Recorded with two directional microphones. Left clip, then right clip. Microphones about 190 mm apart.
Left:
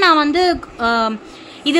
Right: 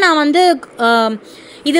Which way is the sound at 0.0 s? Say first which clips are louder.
Right 2 dB; 30° right (ahead or behind).